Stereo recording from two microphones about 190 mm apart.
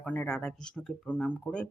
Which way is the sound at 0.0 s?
5° left (ahead or behind).